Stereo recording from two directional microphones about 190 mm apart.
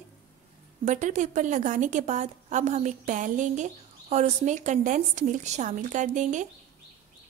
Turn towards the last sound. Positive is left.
turn(degrees=-40)  # may be behind; listen again after turning